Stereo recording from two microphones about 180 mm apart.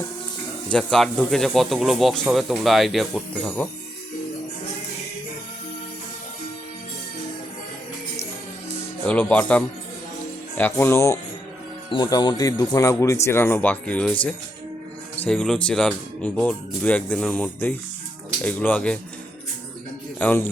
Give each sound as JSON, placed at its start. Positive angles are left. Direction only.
{"t": 0.7, "sound": "speech", "side_deg": 5}
{"t": 9.0, "sound": "speech", "side_deg": 5}
{"t": 20.1, "sound": "a man's voice", "side_deg": 10}